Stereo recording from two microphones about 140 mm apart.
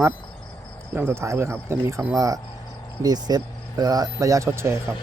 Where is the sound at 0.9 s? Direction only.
15° right (ahead or behind).